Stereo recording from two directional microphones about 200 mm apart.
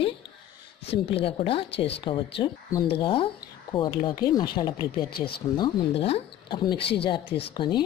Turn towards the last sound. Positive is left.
turn(degrees=25)  # may be behind; listen again after turning